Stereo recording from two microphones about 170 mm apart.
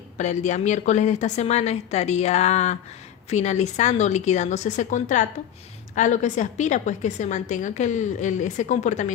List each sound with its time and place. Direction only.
0.2 s a woman's voice: 45° left (ahead or behind)